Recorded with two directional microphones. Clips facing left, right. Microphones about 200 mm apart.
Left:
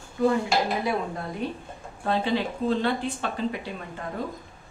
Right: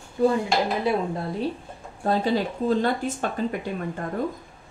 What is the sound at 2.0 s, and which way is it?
Speech, 40° right (ahead or behind).